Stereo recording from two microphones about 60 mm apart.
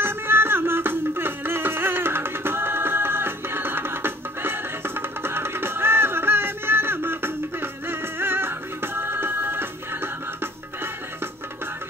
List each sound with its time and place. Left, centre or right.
0.0 s music: right